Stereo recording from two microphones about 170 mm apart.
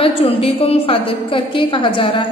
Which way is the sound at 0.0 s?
35° left (ahead or behind).